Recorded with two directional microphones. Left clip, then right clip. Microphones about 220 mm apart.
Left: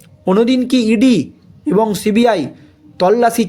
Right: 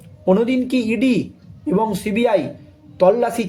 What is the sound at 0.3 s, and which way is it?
A man's voice, 45° left (ahead or behind).